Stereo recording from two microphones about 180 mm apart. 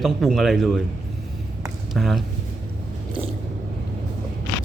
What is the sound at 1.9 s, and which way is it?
Speech, centre (ahead or behind).